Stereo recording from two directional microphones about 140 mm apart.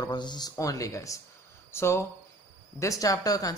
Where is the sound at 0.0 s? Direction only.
30° left (ahead or behind).